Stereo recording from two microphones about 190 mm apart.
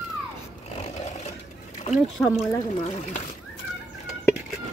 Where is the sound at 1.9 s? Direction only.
40° left (ahead or behind).